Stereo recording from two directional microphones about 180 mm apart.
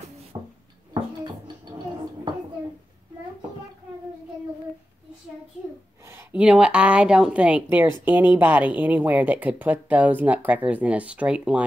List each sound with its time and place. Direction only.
0.3 s music: 20° right (ahead or behind)
6.0 s a woman's voice: 10° right (ahead or behind)